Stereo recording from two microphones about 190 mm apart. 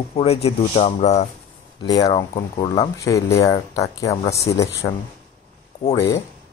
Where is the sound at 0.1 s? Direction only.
30° left (ahead or behind).